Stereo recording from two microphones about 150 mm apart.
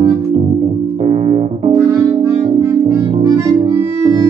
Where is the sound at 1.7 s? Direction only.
20° right (ahead or behind).